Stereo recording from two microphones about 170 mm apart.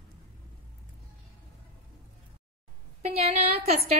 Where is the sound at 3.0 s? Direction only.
35° right (ahead or behind).